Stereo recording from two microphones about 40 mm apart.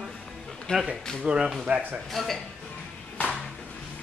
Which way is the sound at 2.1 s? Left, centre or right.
Centre.